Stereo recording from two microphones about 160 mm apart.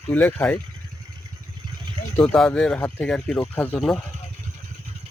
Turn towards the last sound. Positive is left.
turn(degrees=0)  # may be behind; listen again after turning